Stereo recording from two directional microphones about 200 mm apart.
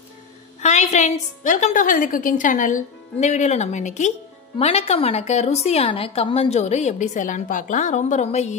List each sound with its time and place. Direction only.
0.6 s a woman's voice: 35° left (ahead or behind)